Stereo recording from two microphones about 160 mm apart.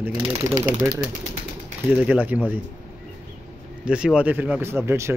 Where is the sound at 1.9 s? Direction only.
10° right (ahead or behind).